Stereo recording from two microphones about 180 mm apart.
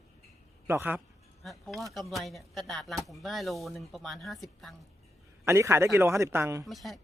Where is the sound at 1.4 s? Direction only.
Centre (ahead or behind).